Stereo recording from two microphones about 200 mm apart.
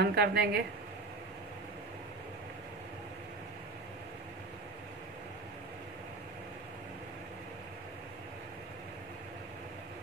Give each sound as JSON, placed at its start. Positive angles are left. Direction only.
{"t": 0.0, "sound": "speech", "side_deg": -55}